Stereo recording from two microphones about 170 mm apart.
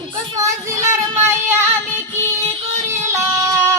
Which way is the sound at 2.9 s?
15° right (ahead or behind).